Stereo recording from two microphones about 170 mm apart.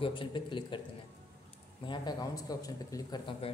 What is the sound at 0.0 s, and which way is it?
Speech, 30° left (ahead or behind).